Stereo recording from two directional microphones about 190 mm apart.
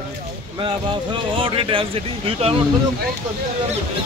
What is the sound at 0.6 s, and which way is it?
Speech, 25° right (ahead or behind).